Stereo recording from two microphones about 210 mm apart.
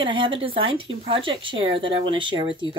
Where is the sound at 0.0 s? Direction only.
25° right (ahead or behind).